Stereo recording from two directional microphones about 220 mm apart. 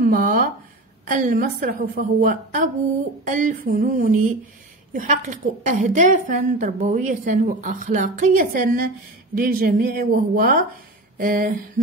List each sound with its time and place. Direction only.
0.0 s a woman's voice: 40° right (ahead or behind)